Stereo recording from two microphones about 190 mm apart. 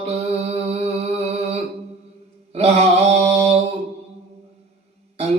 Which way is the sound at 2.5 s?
35° right (ahead or behind).